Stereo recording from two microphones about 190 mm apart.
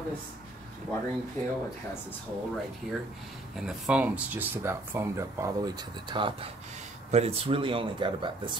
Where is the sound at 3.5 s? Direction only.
5° right (ahead or behind).